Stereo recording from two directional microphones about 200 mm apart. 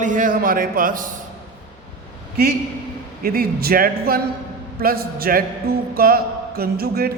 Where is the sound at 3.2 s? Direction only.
50° right (ahead or behind).